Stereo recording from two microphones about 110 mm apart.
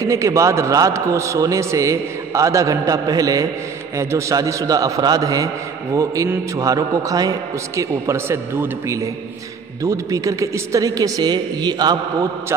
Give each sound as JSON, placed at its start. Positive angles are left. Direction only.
{"t": 0.0, "sound": "a man's voice", "side_deg": -30}